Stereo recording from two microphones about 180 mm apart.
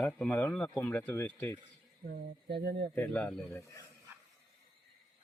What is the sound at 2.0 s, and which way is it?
Speech, 60° right (ahead or behind).